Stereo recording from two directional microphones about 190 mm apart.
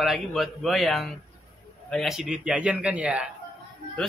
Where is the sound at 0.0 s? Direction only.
Centre (ahead or behind).